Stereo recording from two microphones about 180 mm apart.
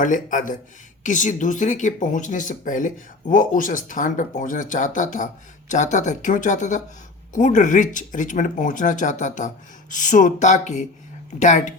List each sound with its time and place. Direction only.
0.0 s a woman's voice: 45° left (ahead or behind)